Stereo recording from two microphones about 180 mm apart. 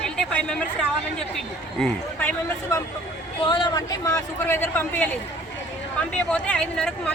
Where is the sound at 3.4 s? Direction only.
25° left (ahead or behind); by 5.1 s 10° left (ahead or behind).